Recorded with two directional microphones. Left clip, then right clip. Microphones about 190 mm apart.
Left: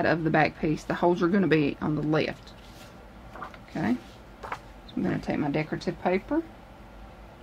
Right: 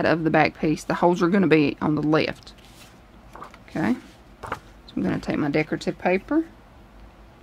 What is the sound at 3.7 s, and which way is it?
Speech, 55° right (ahead or behind).